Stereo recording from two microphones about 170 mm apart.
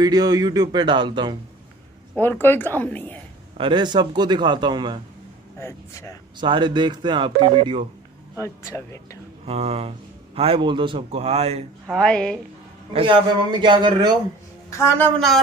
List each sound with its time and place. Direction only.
0.0 s speech: 25° right (ahead or behind)
2.1 s a woman's voice: 10° left (ahead or behind)
3.5 s speech: 30° right (ahead or behind)
5.6 s a woman's voice: 15° left (ahead or behind)
6.4 s speech: 25° right (ahead or behind)
8.4 s a woman's voice: 15° left (ahead or behind)
9.5 s a man's voice: 35° right (ahead or behind)
11.9 s a woman's voice: 5° left (ahead or behind)
12.9 s speech: 30° right (ahead or behind)
14.7 s a woman's voice: 15° left (ahead or behind)
15.1 s a woman's voice: centre (ahead or behind)